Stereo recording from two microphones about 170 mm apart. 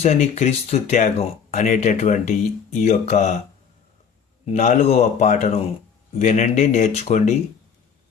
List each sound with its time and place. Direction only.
0.0 s speech: 45° left (ahead or behind)
4.5 s speech: 45° left (ahead or behind)